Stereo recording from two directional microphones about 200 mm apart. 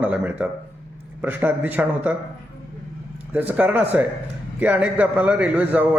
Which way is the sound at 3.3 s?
10° right (ahead or behind).